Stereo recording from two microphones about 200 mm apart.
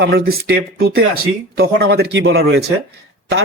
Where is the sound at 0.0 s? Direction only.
50° right (ahead or behind).